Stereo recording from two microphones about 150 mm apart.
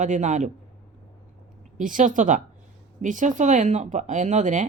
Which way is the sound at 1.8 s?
60° right (ahead or behind).